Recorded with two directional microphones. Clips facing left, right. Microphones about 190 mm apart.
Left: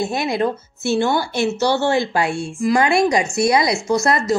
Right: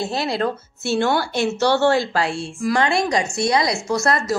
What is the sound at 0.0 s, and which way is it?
Speech, 15° left (ahead or behind).